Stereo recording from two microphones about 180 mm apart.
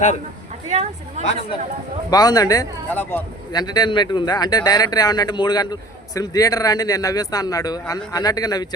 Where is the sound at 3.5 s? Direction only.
20° left (ahead or behind).